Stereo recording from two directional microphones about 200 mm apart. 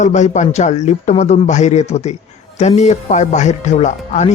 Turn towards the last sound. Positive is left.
turn(degrees=35)  # may be behind; listen again after turning